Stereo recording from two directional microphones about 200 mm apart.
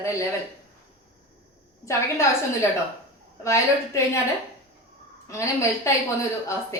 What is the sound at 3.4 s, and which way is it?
Speech, 15° left (ahead or behind).